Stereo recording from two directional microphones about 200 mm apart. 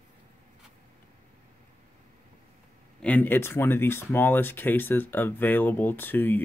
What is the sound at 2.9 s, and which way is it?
Speech, 10° left (ahead or behind).